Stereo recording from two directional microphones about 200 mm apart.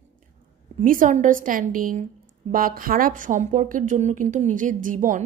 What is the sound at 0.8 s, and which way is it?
A woman's voice, 40° right (ahead or behind).